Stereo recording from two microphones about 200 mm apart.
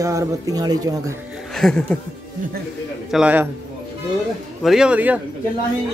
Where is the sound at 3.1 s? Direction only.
10° right (ahead or behind).